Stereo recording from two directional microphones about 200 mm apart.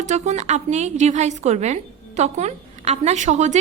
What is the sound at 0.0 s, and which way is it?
A woman's voice, 35° right (ahead or behind).